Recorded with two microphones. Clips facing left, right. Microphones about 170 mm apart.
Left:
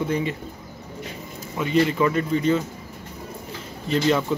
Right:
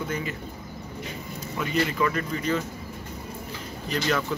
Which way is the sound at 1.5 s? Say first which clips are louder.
Left 6 dB; 25° left (ahead or behind).